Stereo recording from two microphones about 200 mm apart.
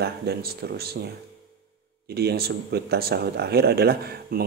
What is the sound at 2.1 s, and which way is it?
A man's voice, 55° right (ahead or behind).